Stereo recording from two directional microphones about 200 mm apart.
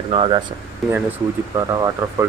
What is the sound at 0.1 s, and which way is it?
Speech, 25° right (ahead or behind).